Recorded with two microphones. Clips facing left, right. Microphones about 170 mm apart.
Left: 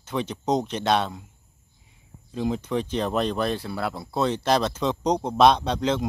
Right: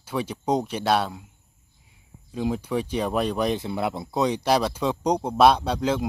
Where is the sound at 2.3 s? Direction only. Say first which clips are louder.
Even; 5° right (ahead or behind).